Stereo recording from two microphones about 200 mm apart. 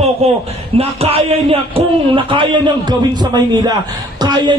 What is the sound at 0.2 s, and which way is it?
A man's voice, 30° right (ahead or behind).